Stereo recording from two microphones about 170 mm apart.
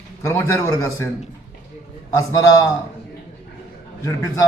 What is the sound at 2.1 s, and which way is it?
Speech, 20° left (ahead or behind).